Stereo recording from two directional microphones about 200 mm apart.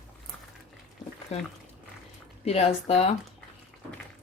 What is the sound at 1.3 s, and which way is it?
Speech, 30° left (ahead or behind).